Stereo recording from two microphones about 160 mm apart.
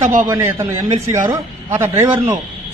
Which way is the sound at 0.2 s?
15° right (ahead or behind).